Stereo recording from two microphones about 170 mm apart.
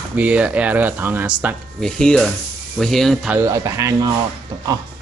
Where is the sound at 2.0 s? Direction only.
5° left (ahead or behind).